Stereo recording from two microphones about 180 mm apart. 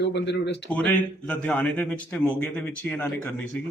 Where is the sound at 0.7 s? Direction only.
5° left (ahead or behind).